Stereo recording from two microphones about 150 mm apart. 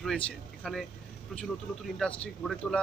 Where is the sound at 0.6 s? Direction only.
5° left (ahead or behind).